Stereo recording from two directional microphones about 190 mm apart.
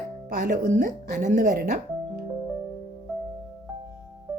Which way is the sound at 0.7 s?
40° right (ahead or behind).